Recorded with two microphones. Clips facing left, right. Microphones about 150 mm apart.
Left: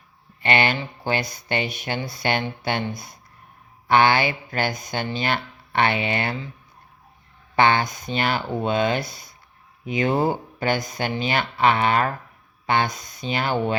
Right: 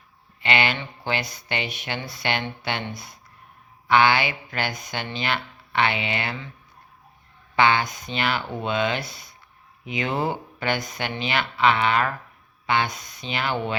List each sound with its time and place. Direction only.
0.4 s speech: 45° left (ahead or behind)
7.5 s speech: 45° left (ahead or behind)